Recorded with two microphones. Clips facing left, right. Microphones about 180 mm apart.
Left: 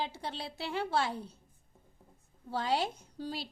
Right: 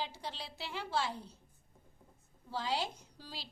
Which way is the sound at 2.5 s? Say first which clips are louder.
Left 5 dB; 55° left (ahead or behind).